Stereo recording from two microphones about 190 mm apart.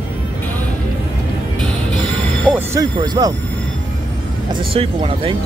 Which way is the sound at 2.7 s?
20° right (ahead or behind).